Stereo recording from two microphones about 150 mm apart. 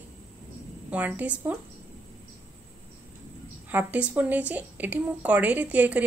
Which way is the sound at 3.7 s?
10° right (ahead or behind).